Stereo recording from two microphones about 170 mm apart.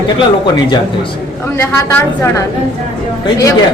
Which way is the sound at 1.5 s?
15° left (ahead or behind).